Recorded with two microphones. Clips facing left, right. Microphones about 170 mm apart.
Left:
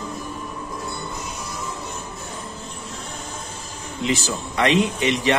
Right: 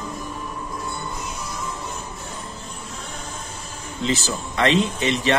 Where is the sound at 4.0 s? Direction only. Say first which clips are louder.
Even; 15° left (ahead or behind).